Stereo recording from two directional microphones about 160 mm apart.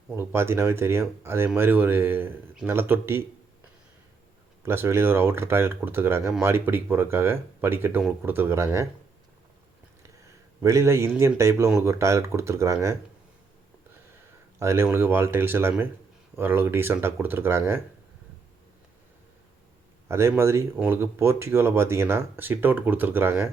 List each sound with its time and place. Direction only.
0.1 s speech: 15° right (ahead or behind)
4.6 s speech: 15° right (ahead or behind)
10.6 s a man's voice: 20° right (ahead or behind)
14.6 s speech: 15° right (ahead or behind)
20.1 s speech: 15° right (ahead or behind)